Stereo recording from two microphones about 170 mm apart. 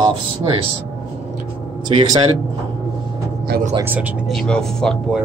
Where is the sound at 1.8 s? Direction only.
25° right (ahead or behind).